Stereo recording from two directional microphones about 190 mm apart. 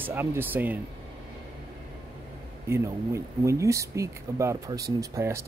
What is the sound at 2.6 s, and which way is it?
Speech, 15° right (ahead or behind).